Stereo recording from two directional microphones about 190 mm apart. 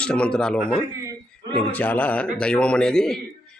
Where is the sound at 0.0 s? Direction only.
5° left (ahead or behind).